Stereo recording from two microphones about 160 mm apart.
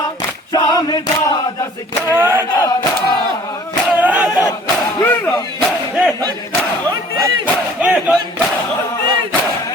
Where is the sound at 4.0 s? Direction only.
10° right (ahead or behind).